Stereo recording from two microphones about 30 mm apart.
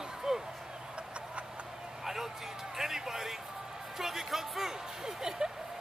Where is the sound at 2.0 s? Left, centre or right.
Centre.